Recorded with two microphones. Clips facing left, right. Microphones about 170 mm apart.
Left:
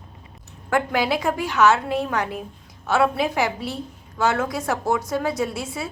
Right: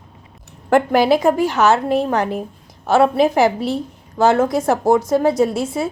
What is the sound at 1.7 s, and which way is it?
A woman's voice, 35° right (ahead or behind).